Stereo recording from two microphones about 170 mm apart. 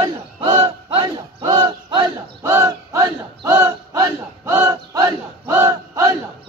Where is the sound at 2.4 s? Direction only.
15° right (ahead or behind).